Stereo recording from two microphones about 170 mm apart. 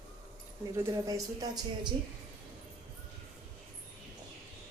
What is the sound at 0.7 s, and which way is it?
Speech, 20° right (ahead or behind).